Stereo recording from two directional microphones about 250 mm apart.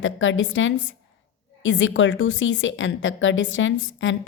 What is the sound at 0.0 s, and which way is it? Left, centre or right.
A woman's voice, left.